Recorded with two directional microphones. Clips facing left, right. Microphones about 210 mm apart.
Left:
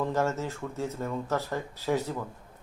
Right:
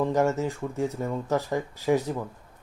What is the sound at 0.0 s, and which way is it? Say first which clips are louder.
A man's voice: right 4 dB; 15° right (ahead or behind).